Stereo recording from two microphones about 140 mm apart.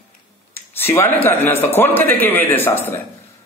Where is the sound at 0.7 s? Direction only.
15° left (ahead or behind).